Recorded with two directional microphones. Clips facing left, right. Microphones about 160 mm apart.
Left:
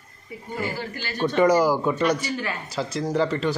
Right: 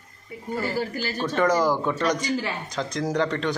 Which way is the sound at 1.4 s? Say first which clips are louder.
Left 3 dB; 10° left (ahead or behind).